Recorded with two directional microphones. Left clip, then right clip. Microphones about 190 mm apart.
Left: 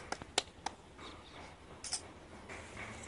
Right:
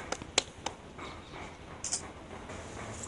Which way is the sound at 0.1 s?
15° left (ahead or behind).